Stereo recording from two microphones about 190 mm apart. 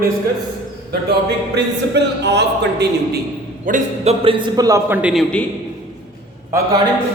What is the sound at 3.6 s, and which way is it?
A man's voice, 40° right (ahead or behind).